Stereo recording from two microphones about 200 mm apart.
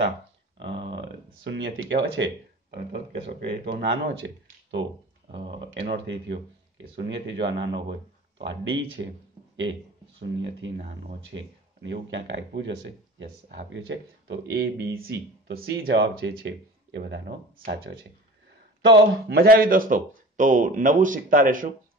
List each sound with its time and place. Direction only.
0.6 s speech: 60° right (ahead or behind)
5.9 s speech: 60° right (ahead or behind); by 21.6 s 45° right (ahead or behind)